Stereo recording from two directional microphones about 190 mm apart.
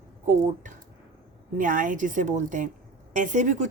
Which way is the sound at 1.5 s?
45° right (ahead or behind).